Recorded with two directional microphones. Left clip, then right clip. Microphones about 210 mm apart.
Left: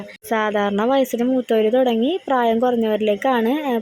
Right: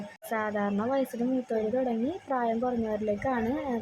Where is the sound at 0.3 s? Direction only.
25° left (ahead or behind).